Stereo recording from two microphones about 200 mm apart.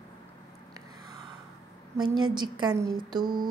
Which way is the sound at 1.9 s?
20° right (ahead or behind).